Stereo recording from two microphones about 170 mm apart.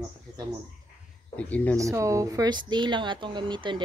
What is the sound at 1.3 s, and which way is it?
Speech, 10° left (ahead or behind).